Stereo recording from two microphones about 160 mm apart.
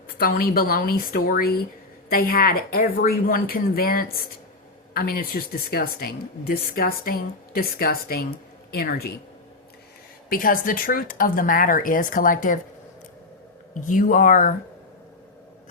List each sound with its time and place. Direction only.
0.2 s speech: 65° left (ahead or behind)
10.2 s speech: 60° left (ahead or behind)
13.8 s speech: 55° left (ahead or behind)